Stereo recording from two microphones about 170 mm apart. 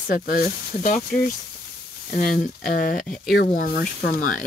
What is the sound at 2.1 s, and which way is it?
Speech, 55° left (ahead or behind).